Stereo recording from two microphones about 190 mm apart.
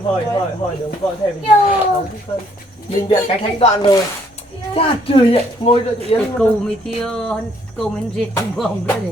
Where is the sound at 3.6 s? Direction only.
25° left (ahead or behind).